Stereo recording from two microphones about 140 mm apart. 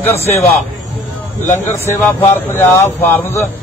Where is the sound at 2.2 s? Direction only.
20° left (ahead or behind).